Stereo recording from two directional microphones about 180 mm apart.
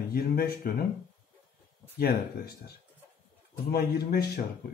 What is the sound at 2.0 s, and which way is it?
Speech, 60° left (ahead or behind).